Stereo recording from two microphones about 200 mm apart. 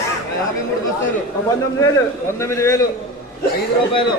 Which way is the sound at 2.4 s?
15° left (ahead or behind).